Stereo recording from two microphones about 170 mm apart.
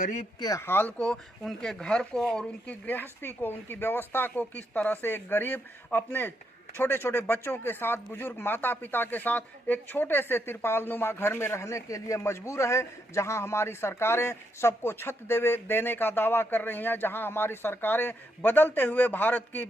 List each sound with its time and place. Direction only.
0.3 s speech: 20° left (ahead or behind)